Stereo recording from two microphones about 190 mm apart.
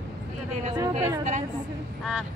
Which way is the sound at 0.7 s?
20° right (ahead or behind).